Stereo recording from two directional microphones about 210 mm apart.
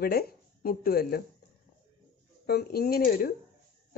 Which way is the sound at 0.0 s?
45° left (ahead or behind).